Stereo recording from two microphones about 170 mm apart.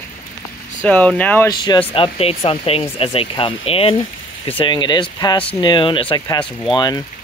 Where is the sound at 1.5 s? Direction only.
25° left (ahead or behind).